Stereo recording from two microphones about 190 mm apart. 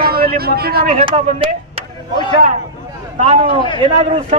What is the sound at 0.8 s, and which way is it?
Speech, 35° right (ahead or behind).